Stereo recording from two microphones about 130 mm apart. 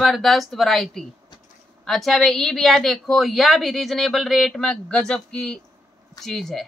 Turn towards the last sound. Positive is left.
turn(degrees=5)  # may be behind; listen again after turning